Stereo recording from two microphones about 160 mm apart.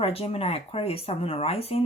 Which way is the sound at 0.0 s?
35° left (ahead or behind).